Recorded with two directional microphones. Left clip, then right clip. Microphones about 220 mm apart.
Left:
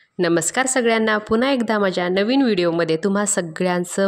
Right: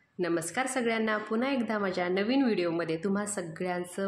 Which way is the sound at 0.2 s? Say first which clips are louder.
Left 11 dB; 45° left (ahead or behind).